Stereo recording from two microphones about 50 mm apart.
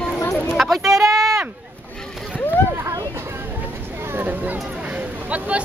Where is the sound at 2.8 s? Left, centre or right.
Right.